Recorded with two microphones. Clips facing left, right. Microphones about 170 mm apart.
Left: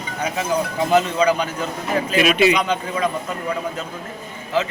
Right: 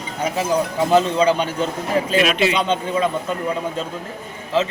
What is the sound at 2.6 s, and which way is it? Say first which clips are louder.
Speech: right 2 dB; 30° right (ahead or behind).